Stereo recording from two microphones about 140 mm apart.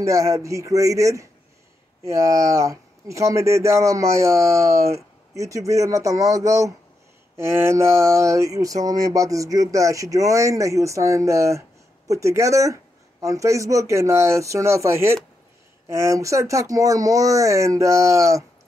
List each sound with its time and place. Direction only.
0.0 s speech: 20° right (ahead or behind)